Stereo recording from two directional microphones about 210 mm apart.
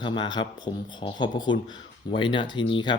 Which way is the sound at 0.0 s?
20° left (ahead or behind).